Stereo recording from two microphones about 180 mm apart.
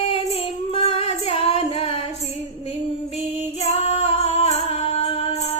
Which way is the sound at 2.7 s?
35° left (ahead or behind).